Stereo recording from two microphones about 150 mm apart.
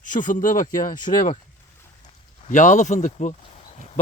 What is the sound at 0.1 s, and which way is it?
Speech, 60° left (ahead or behind).